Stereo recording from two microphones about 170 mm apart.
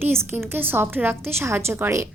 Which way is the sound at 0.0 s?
15° right (ahead or behind).